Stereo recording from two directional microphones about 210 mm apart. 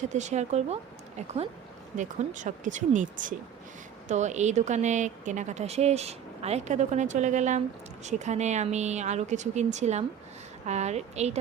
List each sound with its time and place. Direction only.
0.1 s a woman's voice: 35° right (ahead or behind)
2.0 s a woman's voice: 35° right (ahead or behind)